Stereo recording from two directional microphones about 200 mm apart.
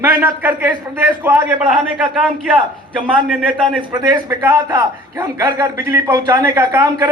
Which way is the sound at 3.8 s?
20° right (ahead or behind).